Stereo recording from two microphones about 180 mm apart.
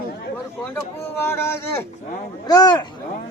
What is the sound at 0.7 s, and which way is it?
Speech, 15° left (ahead or behind).